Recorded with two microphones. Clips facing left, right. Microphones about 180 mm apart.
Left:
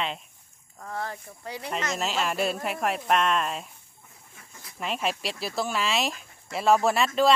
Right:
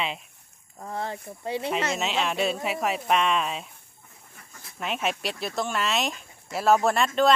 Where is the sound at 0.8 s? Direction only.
25° right (ahead or behind).